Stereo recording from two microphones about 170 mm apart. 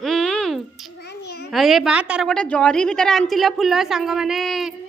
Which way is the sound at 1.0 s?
75° left (ahead or behind).